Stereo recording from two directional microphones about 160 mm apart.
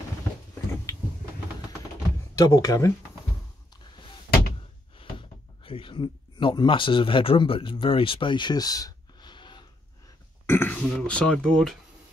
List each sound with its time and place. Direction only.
0.9 s vehicle: 20° left (ahead or behind)
2.3 s speech: 20° left (ahead or behind)
4.9 s speech: 35° left (ahead or behind)
10.4 s speech: 15° left (ahead or behind)